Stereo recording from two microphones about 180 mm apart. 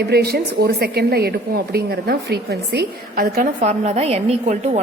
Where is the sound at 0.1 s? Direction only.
60° right (ahead or behind).